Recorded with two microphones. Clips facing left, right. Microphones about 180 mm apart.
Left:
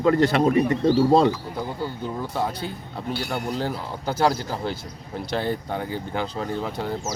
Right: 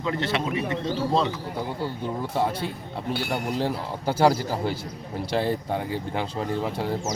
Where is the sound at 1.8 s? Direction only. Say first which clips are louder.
Even; centre (ahead or behind).